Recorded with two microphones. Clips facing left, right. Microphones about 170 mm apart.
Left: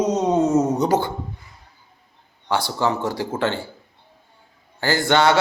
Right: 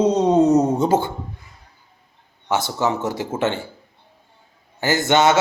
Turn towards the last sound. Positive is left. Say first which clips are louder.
# right 1 dB
turn(degrees=-20)  # may be behind; listen again after turning